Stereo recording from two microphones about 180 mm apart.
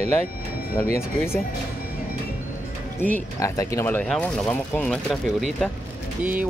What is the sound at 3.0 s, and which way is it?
Speech, 10° left (ahead or behind).